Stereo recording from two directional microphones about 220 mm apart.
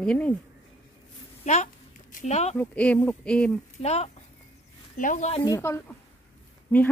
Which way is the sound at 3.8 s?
30° left (ahead or behind).